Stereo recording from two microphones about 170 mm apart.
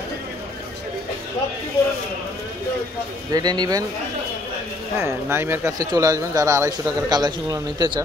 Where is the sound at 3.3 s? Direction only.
25° right (ahead or behind).